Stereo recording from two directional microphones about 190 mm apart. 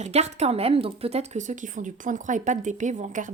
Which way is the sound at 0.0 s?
35° right (ahead or behind).